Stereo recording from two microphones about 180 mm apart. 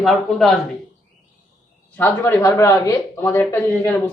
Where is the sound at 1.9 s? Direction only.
10° left (ahead or behind).